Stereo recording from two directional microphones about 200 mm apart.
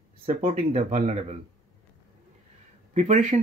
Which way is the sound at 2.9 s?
35° right (ahead or behind).